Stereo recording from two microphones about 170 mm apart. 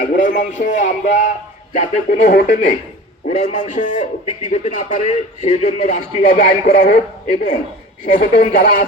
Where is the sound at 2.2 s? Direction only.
60° left (ahead or behind).